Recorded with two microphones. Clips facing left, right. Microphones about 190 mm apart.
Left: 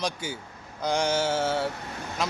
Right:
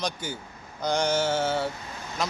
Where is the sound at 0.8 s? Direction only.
10° left (ahead or behind).